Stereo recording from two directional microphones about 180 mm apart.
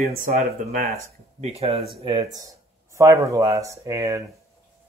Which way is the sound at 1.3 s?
35° right (ahead or behind).